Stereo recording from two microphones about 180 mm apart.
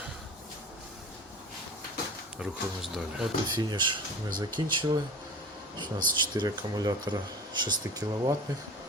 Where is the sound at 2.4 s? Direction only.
Centre (ahead or behind).